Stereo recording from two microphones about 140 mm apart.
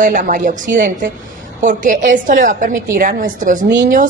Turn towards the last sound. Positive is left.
turn(degrees=-70)  # may be behind; listen again after turning